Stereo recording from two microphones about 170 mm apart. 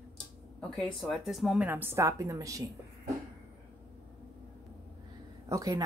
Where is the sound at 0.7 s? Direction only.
Centre (ahead or behind); by 2.6 s 20° right (ahead or behind).